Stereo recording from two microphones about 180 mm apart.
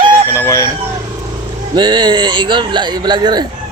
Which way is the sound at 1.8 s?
25° right (ahead or behind).